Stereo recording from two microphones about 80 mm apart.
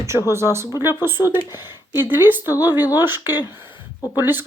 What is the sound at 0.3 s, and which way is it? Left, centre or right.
A woman's voice, right.